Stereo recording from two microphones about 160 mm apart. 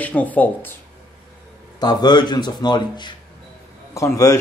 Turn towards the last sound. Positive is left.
turn(degrees=20)  # may be behind; listen again after turning